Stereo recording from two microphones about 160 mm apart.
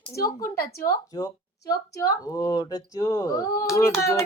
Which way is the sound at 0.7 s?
70° left (ahead or behind).